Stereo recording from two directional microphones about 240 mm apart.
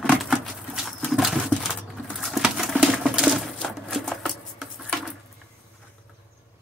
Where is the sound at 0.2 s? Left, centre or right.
Centre.